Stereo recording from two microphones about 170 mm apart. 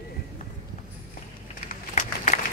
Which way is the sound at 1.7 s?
45° left (ahead or behind).